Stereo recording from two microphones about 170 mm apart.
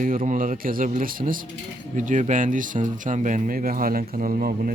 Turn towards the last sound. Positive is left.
turn(degrees=-55)  # may be behind; listen again after turning